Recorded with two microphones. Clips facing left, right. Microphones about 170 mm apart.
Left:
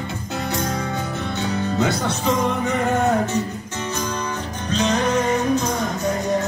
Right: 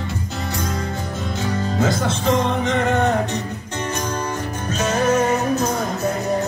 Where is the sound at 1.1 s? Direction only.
65° left (ahead or behind).